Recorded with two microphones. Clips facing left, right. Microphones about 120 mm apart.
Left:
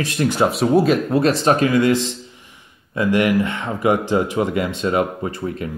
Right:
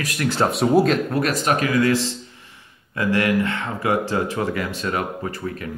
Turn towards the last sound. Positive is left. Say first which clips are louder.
# left 3 dB
turn(degrees=25)  # may be behind; listen again after turning